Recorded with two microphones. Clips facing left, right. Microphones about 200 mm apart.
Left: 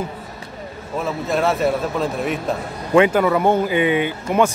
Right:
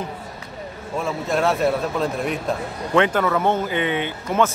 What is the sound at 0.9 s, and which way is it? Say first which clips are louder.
A man's voice: left 1 dB; centre (ahead or behind).